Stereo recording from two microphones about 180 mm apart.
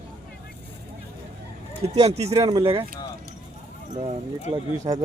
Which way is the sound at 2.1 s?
35° right (ahead or behind).